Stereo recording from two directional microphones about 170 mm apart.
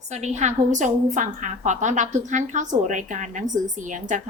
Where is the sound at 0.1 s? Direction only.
45° right (ahead or behind).